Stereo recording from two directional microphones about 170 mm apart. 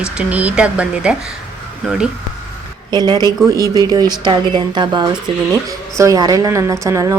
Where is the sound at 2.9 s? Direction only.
25° right (ahead or behind).